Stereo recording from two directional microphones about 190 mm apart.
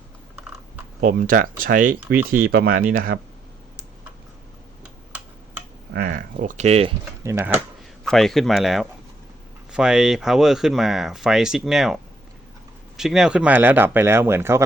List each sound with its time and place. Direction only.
1.0 s speech: 45° right (ahead or behind)
5.9 s speech: 50° right (ahead or behind); by 6.9 s 35° right (ahead or behind)
7.3 s speech: 10° right (ahead or behind)
8.0 s speech: centre (ahead or behind)
13.0 s speech: centre (ahead or behind)